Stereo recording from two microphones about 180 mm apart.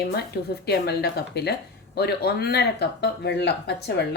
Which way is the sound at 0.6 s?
65° left (ahead or behind).